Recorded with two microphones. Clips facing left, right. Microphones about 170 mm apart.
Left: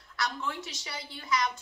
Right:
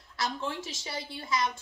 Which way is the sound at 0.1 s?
30° right (ahead or behind).